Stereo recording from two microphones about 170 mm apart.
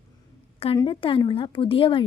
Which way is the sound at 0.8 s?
30° left (ahead or behind).